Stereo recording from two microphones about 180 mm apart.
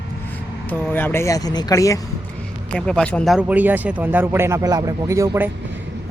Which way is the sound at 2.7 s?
5° left (ahead or behind).